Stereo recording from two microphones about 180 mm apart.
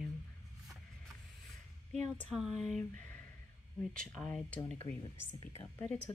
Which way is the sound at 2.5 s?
40° right (ahead or behind).